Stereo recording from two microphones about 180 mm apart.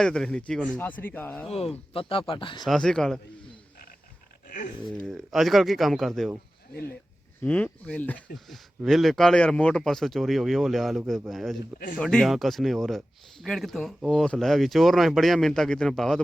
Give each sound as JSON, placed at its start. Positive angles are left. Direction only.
{"t": 0.0, "sound": "speech", "side_deg": 5}
{"t": 1.9, "sound": "speech", "side_deg": 30}
{"t": 2.6, "sound": "speech", "side_deg": 5}
{"t": 4.4, "sound": "dog", "side_deg": 45}
{"t": 4.9, "sound": "speech", "side_deg": 0}
{"t": 7.4, "sound": "speech", "side_deg": 5}